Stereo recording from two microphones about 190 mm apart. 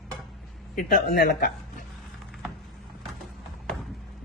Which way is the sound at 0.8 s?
50° left (ahead or behind).